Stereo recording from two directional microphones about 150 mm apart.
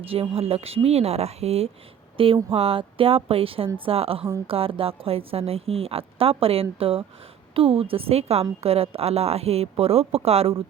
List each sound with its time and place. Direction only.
0.0 s a woman's voice: 40° right (ahead or behind)